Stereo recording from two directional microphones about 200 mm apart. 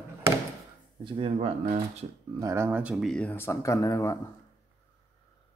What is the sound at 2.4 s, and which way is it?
Speech, 15° right (ahead or behind).